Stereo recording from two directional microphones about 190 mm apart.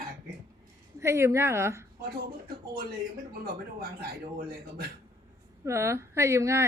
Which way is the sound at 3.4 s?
50° right (ahead or behind).